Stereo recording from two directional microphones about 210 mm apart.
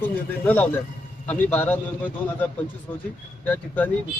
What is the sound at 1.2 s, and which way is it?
Speech, 10° left (ahead or behind).